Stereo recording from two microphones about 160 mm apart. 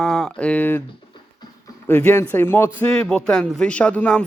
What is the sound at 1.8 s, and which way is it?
A man's voice, 10° left (ahead or behind).